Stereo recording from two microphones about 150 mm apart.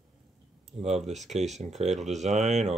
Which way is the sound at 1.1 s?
50° right (ahead or behind).